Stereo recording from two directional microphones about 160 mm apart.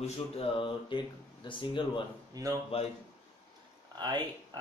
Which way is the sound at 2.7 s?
40° left (ahead or behind).